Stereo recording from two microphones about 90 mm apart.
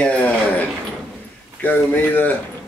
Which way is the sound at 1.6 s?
20° left (ahead or behind).